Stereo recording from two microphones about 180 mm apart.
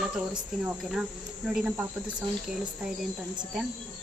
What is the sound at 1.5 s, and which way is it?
Speech, 10° right (ahead or behind).